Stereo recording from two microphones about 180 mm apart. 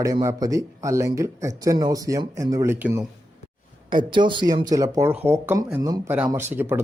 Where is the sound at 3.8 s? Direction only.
25° right (ahead or behind).